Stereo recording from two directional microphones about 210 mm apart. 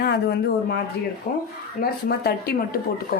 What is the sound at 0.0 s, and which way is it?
Speech, 50° left (ahead or behind).